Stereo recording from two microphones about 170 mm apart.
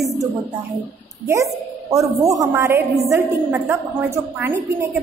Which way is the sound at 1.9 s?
20° right (ahead or behind).